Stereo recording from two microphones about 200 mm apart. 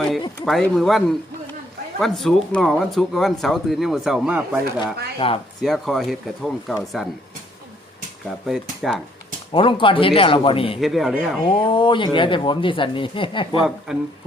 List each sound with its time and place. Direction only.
0.0 s speech: centre (ahead or behind)
5.2 s speech: 25° left (ahead or behind)
5.6 s speech: centre (ahead or behind)
8.4 s speech: centre (ahead or behind)
9.5 s speech: 25° left (ahead or behind)
10.8 s speech: centre (ahead or behind)
11.4 s speech: 25° left (ahead or behind)